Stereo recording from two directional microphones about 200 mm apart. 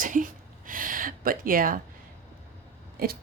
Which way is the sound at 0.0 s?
40° right (ahead or behind).